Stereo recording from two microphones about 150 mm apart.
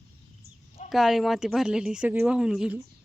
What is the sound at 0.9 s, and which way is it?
Speech, centre (ahead or behind).